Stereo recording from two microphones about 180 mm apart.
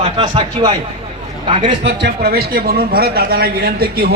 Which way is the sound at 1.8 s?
75° right (ahead or behind).